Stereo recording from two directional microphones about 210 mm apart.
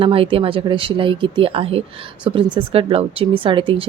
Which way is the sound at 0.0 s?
25° right (ahead or behind).